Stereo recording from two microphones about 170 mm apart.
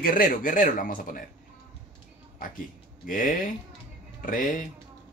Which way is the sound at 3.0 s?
55° left (ahead or behind).